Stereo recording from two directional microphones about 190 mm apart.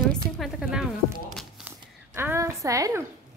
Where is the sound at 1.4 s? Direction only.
5° right (ahead or behind).